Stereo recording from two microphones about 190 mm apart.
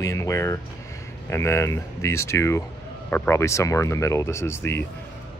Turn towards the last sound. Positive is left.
turn(degrees=10)  # may be behind; listen again after turning